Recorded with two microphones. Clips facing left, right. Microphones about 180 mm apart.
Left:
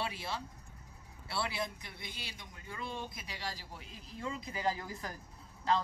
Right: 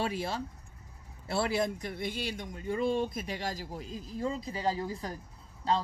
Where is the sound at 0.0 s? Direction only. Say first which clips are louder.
Right 7 dB; 45° right (ahead or behind).